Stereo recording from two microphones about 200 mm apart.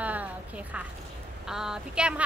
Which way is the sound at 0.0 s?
5° right (ahead or behind).